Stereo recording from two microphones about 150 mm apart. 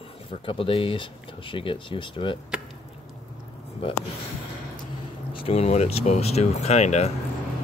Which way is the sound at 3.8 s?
40° left (ahead or behind).